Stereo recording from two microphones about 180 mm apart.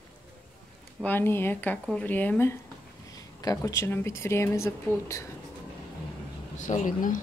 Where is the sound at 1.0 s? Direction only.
10° left (ahead or behind).